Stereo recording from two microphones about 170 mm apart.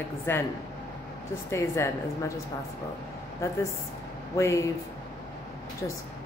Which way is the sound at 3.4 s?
15° left (ahead or behind).